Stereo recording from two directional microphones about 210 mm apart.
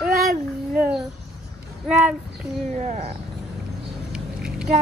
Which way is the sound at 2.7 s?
35° right (ahead or behind).